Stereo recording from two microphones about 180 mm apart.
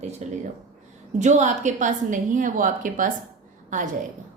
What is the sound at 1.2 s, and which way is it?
A woman's voice, 40° right (ahead or behind).